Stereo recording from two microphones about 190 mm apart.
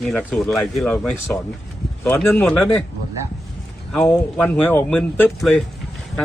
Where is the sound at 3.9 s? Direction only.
5° left (ahead or behind).